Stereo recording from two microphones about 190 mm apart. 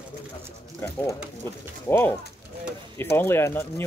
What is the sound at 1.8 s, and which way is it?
Speech, 15° left (ahead or behind).